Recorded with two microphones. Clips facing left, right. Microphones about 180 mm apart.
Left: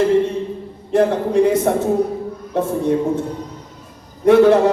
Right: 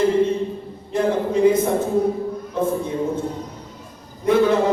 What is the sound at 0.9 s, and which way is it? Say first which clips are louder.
Speech: left 4 dB; 75° left (ahead or behind).